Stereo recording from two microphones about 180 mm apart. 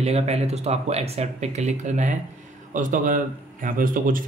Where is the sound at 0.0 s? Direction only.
35° right (ahead or behind).